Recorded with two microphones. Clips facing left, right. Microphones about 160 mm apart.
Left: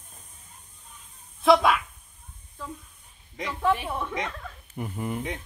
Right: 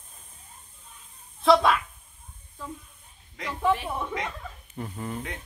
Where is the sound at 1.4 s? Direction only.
Centre (ahead or behind).